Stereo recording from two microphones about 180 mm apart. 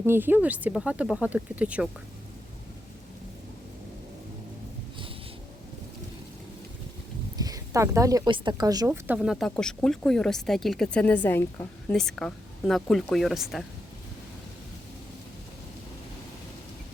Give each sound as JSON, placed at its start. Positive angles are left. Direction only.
{"t": 0.0, "sound": "speech", "side_deg": -10}
{"t": 7.3, "sound": "speech", "side_deg": -20}
{"t": 9.0, "sound": "speech", "side_deg": -5}